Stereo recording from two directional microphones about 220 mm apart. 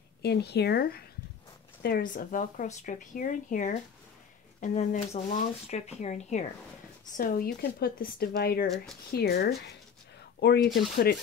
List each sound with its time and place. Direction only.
0.2 s a woman's voice: 50° left (ahead or behind)